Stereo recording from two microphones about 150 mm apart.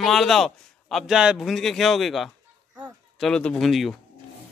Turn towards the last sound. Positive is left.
turn(degrees=0)  # may be behind; listen again after turning